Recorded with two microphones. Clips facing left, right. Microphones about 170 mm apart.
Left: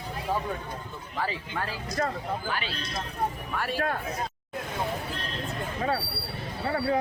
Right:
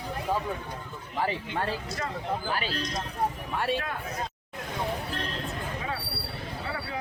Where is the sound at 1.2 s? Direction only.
20° right (ahead or behind).